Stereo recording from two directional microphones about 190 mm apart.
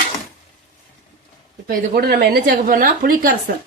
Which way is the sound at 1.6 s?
50° right (ahead or behind).